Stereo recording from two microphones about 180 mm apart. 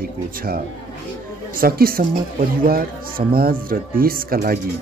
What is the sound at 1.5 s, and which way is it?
A man's voice, 55° right (ahead or behind).